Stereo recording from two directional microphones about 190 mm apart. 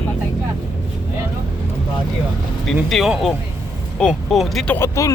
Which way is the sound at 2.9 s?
Centre (ahead or behind).